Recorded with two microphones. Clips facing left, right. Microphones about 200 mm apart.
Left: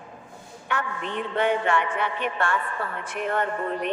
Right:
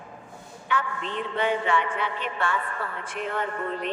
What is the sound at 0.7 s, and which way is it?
A man's voice, 50° left (ahead or behind).